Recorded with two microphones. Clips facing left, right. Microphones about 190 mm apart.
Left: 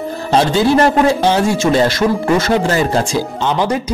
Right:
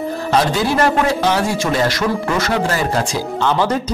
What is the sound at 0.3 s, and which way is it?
Speech, 30° left (ahead or behind).